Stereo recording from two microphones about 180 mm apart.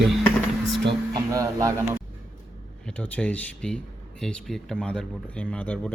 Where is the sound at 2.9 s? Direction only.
10° left (ahead or behind).